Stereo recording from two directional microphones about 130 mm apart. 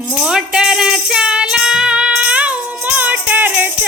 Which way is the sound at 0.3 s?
5° right (ahead or behind).